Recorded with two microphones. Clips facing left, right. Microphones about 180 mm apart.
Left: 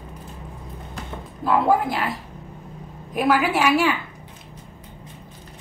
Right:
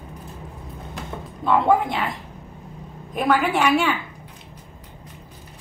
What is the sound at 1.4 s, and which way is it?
Speech, 5° left (ahead or behind).